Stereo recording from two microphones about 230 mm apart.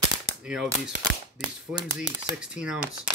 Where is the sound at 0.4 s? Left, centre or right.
Centre.